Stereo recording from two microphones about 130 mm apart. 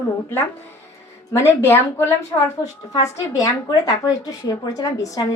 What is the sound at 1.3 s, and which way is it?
A woman's voice, 20° left (ahead or behind).